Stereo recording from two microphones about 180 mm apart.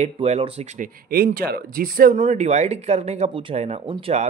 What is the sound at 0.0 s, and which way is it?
Speech, 35° right (ahead or behind).